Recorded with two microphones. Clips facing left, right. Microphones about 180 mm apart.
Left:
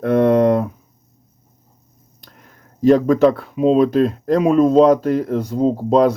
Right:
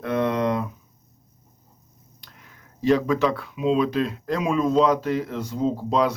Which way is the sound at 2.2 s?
45° left (ahead or behind).